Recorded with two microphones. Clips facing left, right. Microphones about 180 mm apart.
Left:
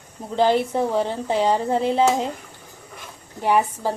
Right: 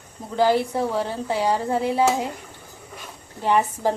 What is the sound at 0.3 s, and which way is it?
Speech, 20° left (ahead or behind).